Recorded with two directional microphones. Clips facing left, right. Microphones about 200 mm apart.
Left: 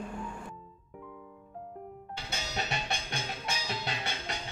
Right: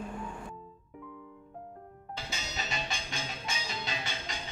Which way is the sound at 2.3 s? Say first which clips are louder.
Left 4 dB; 60° left (ahead or behind).